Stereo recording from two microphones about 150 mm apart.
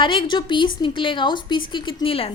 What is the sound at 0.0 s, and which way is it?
A woman's voice, 35° left (ahead or behind).